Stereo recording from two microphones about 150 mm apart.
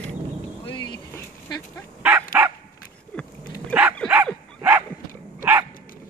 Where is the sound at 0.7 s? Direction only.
30° left (ahead or behind).